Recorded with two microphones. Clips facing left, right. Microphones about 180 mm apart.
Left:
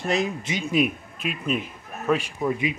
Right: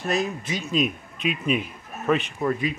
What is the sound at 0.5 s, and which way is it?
Speech, 15° left (ahead or behind).